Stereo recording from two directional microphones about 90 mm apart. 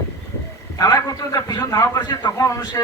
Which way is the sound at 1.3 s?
40° left (ahead or behind).